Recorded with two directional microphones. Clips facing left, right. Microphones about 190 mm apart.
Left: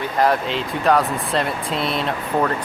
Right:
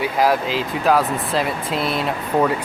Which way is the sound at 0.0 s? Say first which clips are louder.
Right 1 dB; 5° right (ahead or behind).